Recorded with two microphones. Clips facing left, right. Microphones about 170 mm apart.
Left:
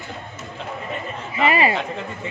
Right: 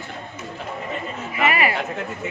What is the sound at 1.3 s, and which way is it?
Speech, 25° left (ahead or behind).